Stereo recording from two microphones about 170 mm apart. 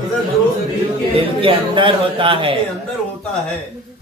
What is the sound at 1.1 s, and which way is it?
A man's voice, 30° right (ahead or behind).